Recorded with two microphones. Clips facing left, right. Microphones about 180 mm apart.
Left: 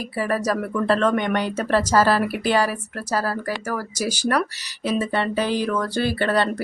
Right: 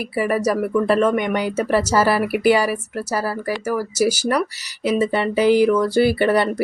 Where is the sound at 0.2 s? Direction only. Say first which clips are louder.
Right 4 dB; 15° right (ahead or behind).